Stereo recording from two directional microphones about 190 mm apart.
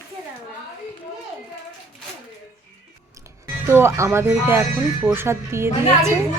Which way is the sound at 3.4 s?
10° right (ahead or behind).